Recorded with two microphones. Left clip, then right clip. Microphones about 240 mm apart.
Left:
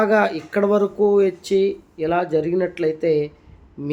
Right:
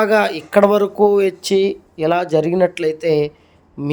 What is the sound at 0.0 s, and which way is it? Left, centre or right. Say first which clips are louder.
A man's voice: right 2 dB; centre.